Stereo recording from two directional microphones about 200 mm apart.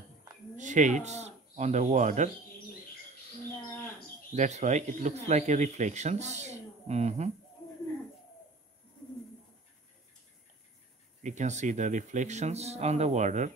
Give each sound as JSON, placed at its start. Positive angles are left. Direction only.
{"t": 0.6, "sound": "speech", "side_deg": -40}
{"t": 4.4, "sound": "speech", "side_deg": -35}
{"t": 11.2, "sound": "speech", "side_deg": -35}